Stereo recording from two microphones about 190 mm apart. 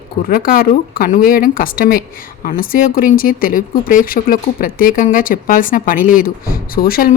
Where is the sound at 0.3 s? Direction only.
50° left (ahead or behind).